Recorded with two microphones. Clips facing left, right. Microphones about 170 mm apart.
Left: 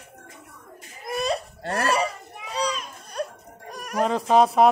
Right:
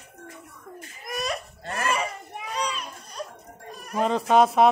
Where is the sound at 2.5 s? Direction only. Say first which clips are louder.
Left 3 dB; 40° left (ahead or behind).